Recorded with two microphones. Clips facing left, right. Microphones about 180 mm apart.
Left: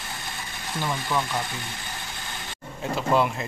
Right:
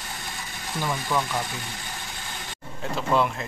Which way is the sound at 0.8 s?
10° right (ahead or behind).